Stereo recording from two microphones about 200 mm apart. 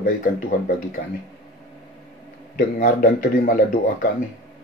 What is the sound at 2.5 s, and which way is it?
Speech, 45° left (ahead or behind).